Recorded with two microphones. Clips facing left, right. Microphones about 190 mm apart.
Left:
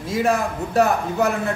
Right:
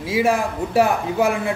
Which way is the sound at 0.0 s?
10° right (ahead or behind).